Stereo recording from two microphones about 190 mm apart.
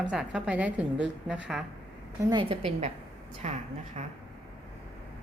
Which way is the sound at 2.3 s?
30° right (ahead or behind).